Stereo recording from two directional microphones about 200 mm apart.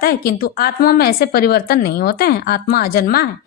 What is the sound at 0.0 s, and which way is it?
A woman's voice, 50° left (ahead or behind).